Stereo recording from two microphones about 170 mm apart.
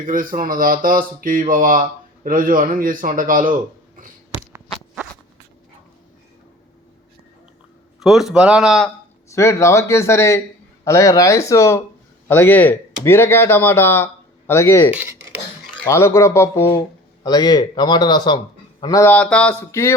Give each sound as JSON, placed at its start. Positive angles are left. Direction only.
{"t": 0.0, "sound": "speech", "side_deg": -55}
{"t": 7.9, "sound": "a man's voice", "side_deg": 0}
{"t": 9.3, "sound": "speech", "side_deg": 15}
{"t": 14.9, "sound": "speech", "side_deg": -15}
{"t": 15.9, "sound": "speech", "side_deg": 15}